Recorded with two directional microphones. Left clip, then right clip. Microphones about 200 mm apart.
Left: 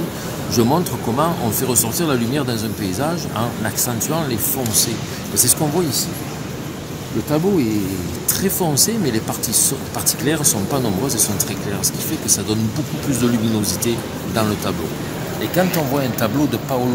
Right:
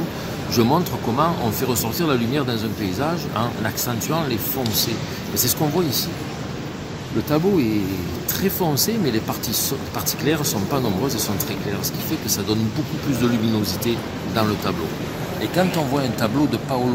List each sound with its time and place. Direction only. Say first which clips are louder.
0.5 s speech: left 1 dB; 10° left (ahead or behind)
7.2 s speech: left 1 dB; 5° left (ahead or behind)